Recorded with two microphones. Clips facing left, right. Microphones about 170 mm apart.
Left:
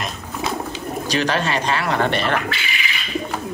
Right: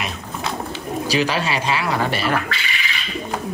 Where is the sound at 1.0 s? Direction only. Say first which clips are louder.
Even; 5° right (ahead or behind).